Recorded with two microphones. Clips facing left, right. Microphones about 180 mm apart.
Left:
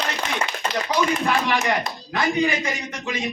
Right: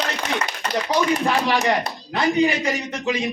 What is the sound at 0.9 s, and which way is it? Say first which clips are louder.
A man's voice: right 2 dB; 35° right (ahead or behind).